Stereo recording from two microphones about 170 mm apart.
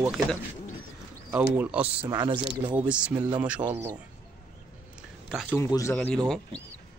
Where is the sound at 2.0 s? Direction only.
25° right (ahead or behind).